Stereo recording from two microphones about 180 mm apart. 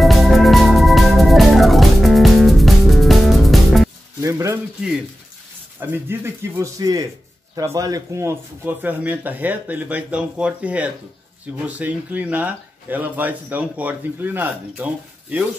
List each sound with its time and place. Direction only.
0.0 s music: centre (ahead or behind)
4.2 s a sound: 15° right (ahead or behind)
5.8 s speech: 15° right (ahead or behind)